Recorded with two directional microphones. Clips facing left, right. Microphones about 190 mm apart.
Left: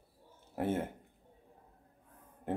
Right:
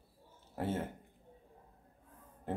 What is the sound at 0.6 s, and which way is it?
Speech, 15° left (ahead or behind).